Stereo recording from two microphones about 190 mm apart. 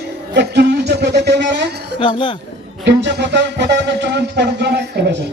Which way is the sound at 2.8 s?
65° right (ahead or behind).